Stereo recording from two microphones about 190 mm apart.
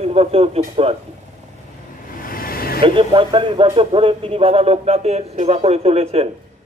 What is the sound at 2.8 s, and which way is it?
Speech, 25° right (ahead or behind).